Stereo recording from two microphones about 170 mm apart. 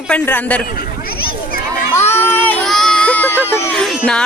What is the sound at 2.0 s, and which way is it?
Crowd, 15° left (ahead or behind).